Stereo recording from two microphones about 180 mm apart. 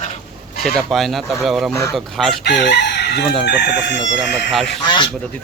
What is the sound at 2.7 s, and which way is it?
Chicken, 65° left (ahead or behind).